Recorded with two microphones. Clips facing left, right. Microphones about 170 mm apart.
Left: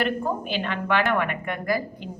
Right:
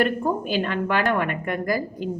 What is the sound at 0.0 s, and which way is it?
A woman's voice, 40° right (ahead or behind).